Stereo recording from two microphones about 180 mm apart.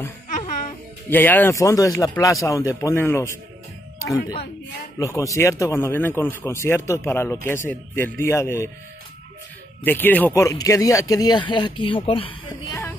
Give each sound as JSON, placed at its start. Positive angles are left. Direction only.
{"t": 0.3, "sound": "music", "side_deg": 45}
{"t": 1.1, "sound": "a man's voice", "side_deg": 10}
{"t": 9.8, "sound": "speech", "side_deg": 10}
{"t": 12.4, "sound": "a man's voice", "side_deg": 15}